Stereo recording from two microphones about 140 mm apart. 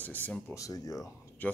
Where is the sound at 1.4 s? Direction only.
10° left (ahead or behind).